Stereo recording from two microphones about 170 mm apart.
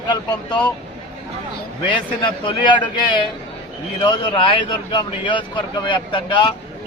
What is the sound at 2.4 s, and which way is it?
Speech, 25° left (ahead or behind).